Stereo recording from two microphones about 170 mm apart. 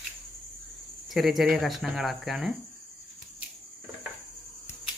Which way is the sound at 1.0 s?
Centre (ahead or behind).